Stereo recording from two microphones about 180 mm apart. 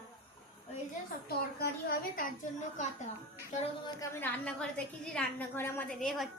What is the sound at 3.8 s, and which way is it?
A woman's voice, 15° left (ahead or behind).